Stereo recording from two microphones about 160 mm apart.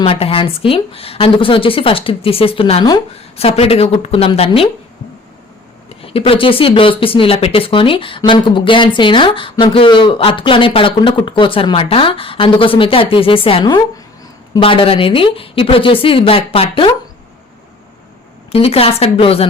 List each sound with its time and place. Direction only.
0.0 s speech: 35° left (ahead or behind)
6.0 s speech: 35° left (ahead or behind)
18.5 s speech: 35° left (ahead or behind)